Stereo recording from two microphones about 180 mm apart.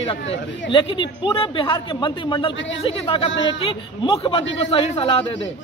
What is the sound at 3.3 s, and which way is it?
Speech, 90° left.